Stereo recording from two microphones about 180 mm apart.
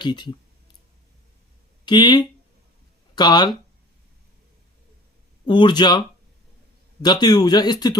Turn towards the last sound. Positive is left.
turn(degrees=25)  # may be behind; listen again after turning